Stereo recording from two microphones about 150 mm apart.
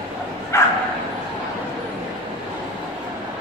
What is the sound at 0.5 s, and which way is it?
Bow-wow, 15° left (ahead or behind).